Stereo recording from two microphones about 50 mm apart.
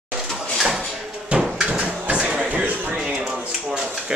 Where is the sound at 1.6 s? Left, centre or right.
Centre.